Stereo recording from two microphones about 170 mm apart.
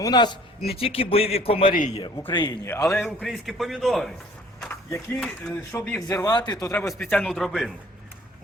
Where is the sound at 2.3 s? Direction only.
25° left (ahead or behind).